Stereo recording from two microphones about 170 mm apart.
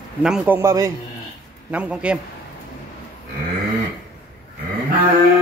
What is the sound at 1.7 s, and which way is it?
Speech, 5° right (ahead or behind).